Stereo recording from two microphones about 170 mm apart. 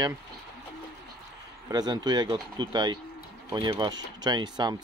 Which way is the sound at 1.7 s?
25° right (ahead or behind).